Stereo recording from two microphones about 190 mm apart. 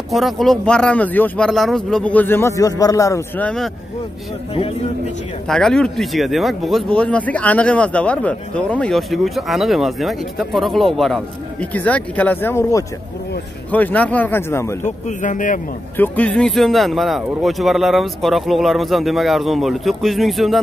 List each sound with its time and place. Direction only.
0.1 s speech: centre (ahead or behind)
5.5 s speech: centre (ahead or behind)
14.8 s speech: 40° left (ahead or behind)
16.0 s speech: 5° left (ahead or behind)